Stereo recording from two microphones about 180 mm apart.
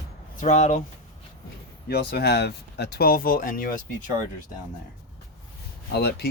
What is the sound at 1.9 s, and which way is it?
Speech, 60° left (ahead or behind).